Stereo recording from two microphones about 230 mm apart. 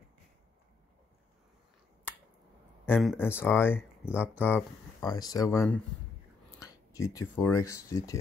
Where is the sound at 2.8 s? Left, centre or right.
Centre.